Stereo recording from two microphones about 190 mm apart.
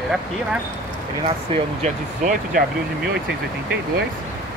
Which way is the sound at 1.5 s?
25° right (ahead or behind).